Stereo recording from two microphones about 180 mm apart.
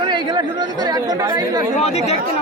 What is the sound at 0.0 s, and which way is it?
Speech, 25° right (ahead or behind).